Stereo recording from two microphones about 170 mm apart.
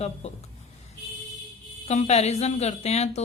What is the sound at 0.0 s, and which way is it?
Speech, 40° left (ahead or behind).